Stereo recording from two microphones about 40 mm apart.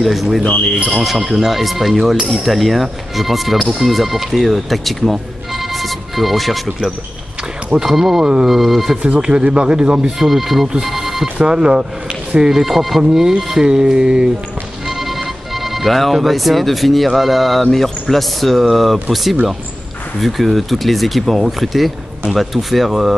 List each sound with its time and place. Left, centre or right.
0.0 s speech: centre
9.0 s speech: right
10.2 s speech: centre
10.9 s telephone bell ringing: centre
11.3 s speech: right
14.9 s speech: centre